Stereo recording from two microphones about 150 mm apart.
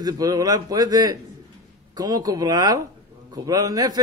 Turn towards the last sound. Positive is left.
turn(degrees=-25)  # may be behind; listen again after turning